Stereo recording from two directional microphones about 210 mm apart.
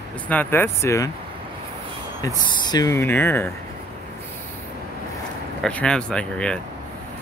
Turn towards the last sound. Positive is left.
turn(degrees=5)  # may be behind; listen again after turning